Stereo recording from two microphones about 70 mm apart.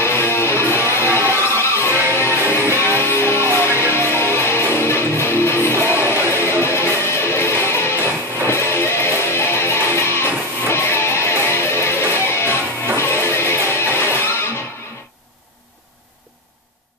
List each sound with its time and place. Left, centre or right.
0.0 s music: left